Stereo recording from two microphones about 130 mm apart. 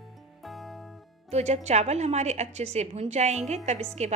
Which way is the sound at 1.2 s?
60° right (ahead or behind).